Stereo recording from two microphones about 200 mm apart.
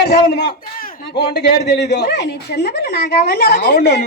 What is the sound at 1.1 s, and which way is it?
Speech, 55° left (ahead or behind).